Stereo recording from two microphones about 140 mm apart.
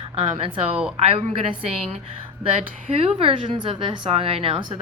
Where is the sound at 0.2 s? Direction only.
40° right (ahead or behind).